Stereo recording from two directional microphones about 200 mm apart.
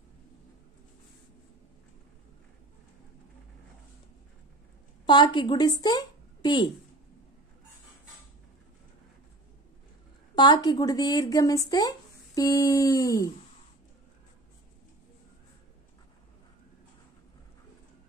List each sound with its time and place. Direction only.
5.0 s a woman's voice: 25° left (ahead or behind)
10.3 s speech: 20° left (ahead or behind)
12.4 s a sound: 15° left (ahead or behind)